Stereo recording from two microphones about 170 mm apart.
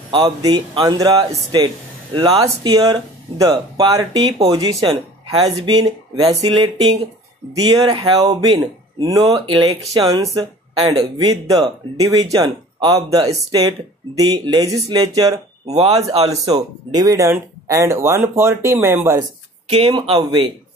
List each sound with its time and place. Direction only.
0.1 s speech: 25° right (ahead or behind)
15.6 s speech: 40° right (ahead or behind)
16.5 s speech: 20° right (ahead or behind)
19.7 s speech: 35° right (ahead or behind)